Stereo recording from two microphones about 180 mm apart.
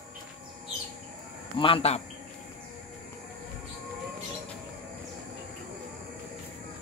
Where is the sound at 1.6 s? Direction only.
30° left (ahead or behind).